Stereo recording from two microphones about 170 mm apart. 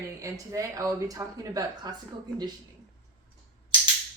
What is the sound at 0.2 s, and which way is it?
A woman's voice, 20° right (ahead or behind).